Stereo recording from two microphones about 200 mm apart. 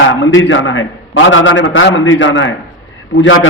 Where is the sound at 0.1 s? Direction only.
70° left (ahead or behind).